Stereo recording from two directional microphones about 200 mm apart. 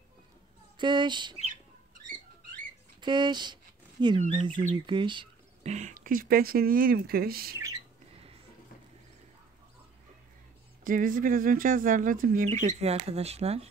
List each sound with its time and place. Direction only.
0.7 s speech: 25° right (ahead or behind)
3.0 s speech: 20° right (ahead or behind)
4.2 s speech: 35° right (ahead or behind)
4.8 s speech: 25° right (ahead or behind); by 7.5 s 50° right (ahead or behind)
7.5 s squawk: 15° right (ahead or behind)
10.8 s speech: 45° right (ahead or behind)